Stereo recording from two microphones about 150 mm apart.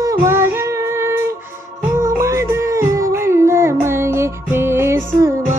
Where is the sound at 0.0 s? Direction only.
20° right (ahead or behind).